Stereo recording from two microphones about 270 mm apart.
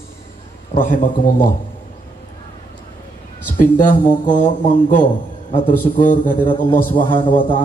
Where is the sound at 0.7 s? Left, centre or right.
Left.